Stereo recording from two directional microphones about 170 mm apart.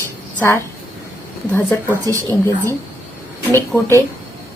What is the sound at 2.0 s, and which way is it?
Speech, 20° right (ahead or behind).